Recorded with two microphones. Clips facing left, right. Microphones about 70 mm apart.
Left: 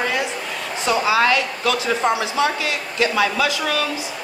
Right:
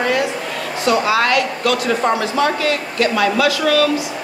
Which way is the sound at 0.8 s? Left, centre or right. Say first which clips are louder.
Right 2 dB; centre.